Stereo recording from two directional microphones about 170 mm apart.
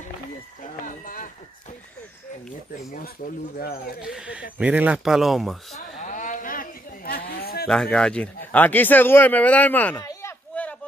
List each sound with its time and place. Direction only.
0.6 s chicken: 50° left (ahead or behind)
3.5 s speech: 60° left (ahead or behind)
4.0 s speech: 5° right (ahead or behind)
5.9 s a sound: 50° left (ahead or behind); by 7.6 s 65° left (ahead or behind)
7.6 s a man's voice: 5° left (ahead or behind)
10.5 s a sound: 10° left (ahead or behind)